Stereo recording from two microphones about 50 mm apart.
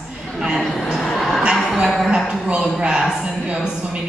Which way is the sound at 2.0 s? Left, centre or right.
Centre.